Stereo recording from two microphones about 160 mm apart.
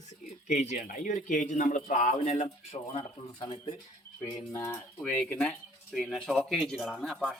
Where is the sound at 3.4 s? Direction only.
30° left (ahead or behind).